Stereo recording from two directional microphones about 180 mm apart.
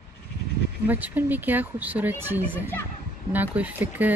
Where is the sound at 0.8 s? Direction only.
10° right (ahead or behind).